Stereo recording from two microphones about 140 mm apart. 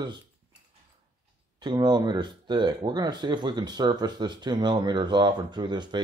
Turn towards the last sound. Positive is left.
turn(degrees=-30)  # may be behind; listen again after turning